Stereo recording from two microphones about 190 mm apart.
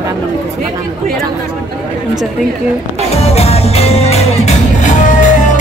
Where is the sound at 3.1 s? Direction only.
35° left (ahead or behind).